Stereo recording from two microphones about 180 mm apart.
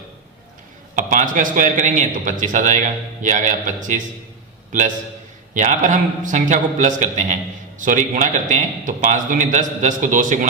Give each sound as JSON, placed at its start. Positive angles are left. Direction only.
{"t": 0.9, "sound": "a man's voice", "side_deg": -45}
{"t": 5.5, "sound": "a man's voice", "side_deg": -45}